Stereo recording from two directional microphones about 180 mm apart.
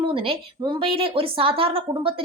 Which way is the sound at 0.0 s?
30° right (ahead or behind).